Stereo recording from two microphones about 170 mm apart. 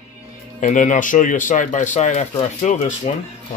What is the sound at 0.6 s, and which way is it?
Speech, 45° left (ahead or behind).